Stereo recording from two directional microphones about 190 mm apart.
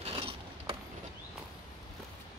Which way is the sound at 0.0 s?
30° right (ahead or behind).